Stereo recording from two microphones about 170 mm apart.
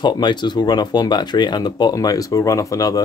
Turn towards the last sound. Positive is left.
turn(degrees=20)  # may be behind; listen again after turning